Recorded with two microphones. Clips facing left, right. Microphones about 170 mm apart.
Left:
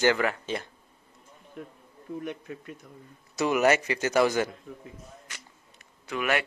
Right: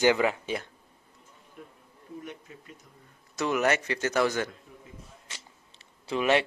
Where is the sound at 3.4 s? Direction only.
10° left (ahead or behind).